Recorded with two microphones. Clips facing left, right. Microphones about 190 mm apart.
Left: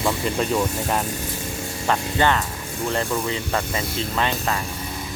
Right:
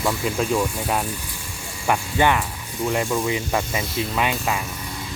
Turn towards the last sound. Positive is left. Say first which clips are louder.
# even
turn(degrees=-10)  # may be behind; listen again after turning